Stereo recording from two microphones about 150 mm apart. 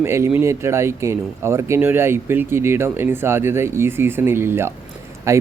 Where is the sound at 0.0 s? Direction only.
15° right (ahead or behind).